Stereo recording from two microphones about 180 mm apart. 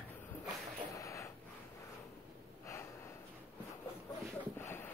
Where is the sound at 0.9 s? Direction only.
15° left (ahead or behind).